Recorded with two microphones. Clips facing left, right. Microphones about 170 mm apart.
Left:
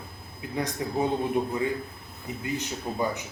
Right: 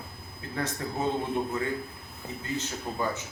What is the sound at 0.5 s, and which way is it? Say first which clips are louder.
Speech: left 3 dB; 15° left (ahead or behind).